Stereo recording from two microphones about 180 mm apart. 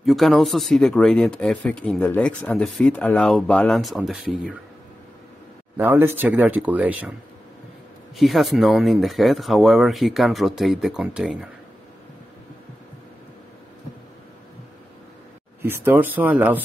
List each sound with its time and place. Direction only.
0.0 s speech: centre (ahead or behind)
5.8 s speech: 10° right (ahead or behind)
8.2 s speech: centre (ahead or behind)
15.6 s speech: 10° right (ahead or behind)